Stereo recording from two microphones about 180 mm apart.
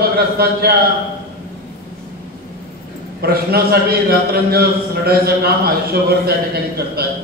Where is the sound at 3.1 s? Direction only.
60° right (ahead or behind).